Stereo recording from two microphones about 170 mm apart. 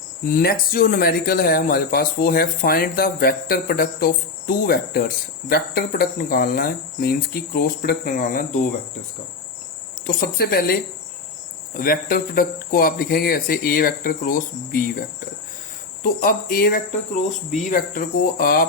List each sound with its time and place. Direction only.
0.3 s speech: 60° left (ahead or behind)
10.2 s speech: 65° left (ahead or behind)